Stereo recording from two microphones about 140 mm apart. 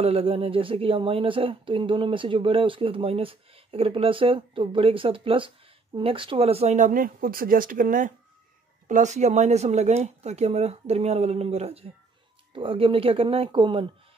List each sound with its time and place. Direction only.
0.0 s speech: 45° right (ahead or behind); by 8.1 s 75° right (ahead or behind)
8.8 s speech: 60° right (ahead or behind); by 13.8 s 35° right (ahead or behind)